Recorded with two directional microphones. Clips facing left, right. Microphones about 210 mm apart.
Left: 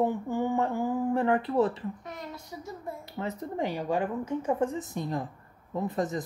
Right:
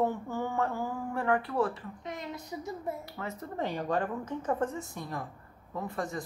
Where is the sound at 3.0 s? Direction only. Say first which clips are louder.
Left 5 dB; 20° left (ahead or behind).